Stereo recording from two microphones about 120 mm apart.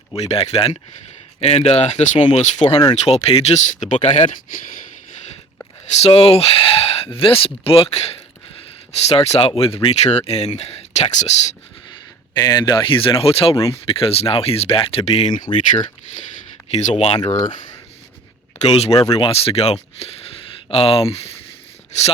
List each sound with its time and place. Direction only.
0.2 s speech: 60° left (ahead or behind)
2.1 s speech: 45° left (ahead or behind)
2.4 s speech: 70° left (ahead or behind)
3.0 s speech: 60° left (ahead or behind); by 4.4 s 80° left
5.8 s speech: 65° left (ahead or behind)
12.3 s speech: 35° left (ahead or behind); by 15.4 s 55° left (ahead or behind)
16.7 s speech: 70° left (ahead or behind)
18.6 s speech: 60° left (ahead or behind)
19.0 s speech: 35° left (ahead or behind)
19.3 s speech: 55° left (ahead or behind)
21.9 s speech: 70° left (ahead or behind)